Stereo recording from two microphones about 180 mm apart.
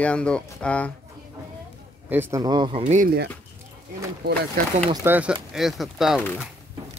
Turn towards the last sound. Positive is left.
turn(degrees=0)  # may be behind; listen again after turning